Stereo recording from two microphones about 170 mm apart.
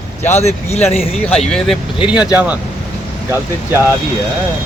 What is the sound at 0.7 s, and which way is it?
Speech, 15° left (ahead or behind).